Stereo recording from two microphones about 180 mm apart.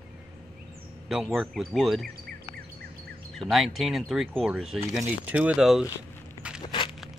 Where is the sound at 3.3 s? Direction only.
Centre (ahead or behind).